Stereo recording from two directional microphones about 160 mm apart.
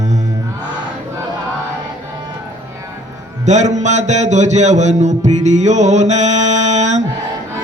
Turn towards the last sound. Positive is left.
turn(degrees=-45)  # may be behind; listen again after turning